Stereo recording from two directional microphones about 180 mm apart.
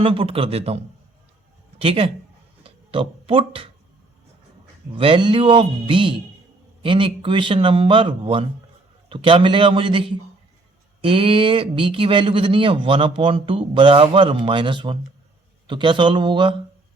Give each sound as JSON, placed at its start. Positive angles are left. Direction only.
{"t": 0.0, "sound": "a man's voice", "side_deg": -30}
{"t": 1.8, "sound": "a man's voice", "side_deg": -30}
{"t": 4.9, "sound": "speech", "side_deg": -30}